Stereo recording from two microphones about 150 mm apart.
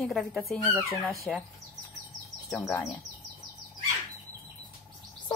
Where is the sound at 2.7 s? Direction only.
20° left (ahead or behind).